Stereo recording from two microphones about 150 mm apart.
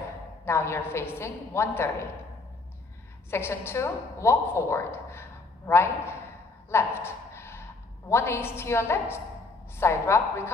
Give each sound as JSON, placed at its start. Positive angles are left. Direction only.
{"t": 0.5, "sound": "a woman's voice", "side_deg": 15}
{"t": 3.3, "sound": "a woman's voice", "side_deg": 15}
{"t": 6.7, "sound": "a sound", "side_deg": 15}
{"t": 8.1, "sound": "a woman's voice", "side_deg": 15}